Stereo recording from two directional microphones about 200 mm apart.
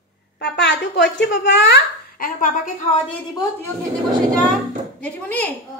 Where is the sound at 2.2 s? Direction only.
40° left (ahead or behind).